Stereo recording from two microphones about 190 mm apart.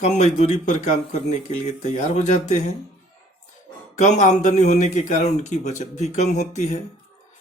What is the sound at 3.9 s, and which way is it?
Speech, 40° left (ahead or behind).